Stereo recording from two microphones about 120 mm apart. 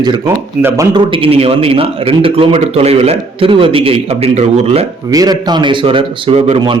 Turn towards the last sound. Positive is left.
turn(degrees=-45)  # may be behind; listen again after turning